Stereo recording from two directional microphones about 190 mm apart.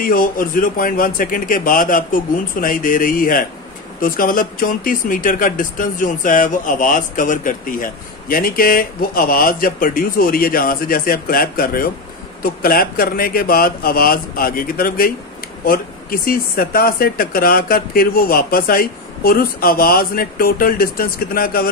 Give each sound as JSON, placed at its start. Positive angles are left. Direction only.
{"t": 0.0, "sound": "speech", "side_deg": 45}